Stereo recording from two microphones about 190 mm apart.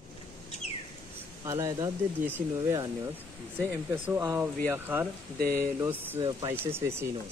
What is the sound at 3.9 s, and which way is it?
Speech, 15° right (ahead or behind).